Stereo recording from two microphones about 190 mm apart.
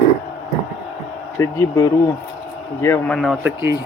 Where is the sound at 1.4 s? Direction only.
15° left (ahead or behind); by 3.5 s centre (ahead or behind).